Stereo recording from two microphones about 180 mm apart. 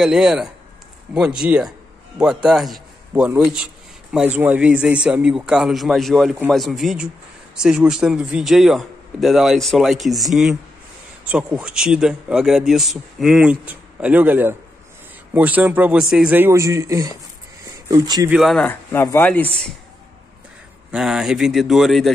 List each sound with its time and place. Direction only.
0.0 s a man's voice: 5° right (ahead or behind); by 18.3 s 20° right (ahead or behind)
18.3 s a man's voice: centre (ahead or behind)
18.7 s speech: 10° left (ahead or behind)
20.9 s a man's voice: 5° right (ahead or behind)